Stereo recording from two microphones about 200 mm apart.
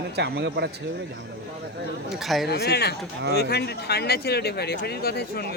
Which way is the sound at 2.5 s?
55° left (ahead or behind).